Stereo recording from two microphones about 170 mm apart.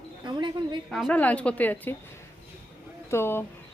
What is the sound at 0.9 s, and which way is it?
A woman's voice, centre (ahead or behind).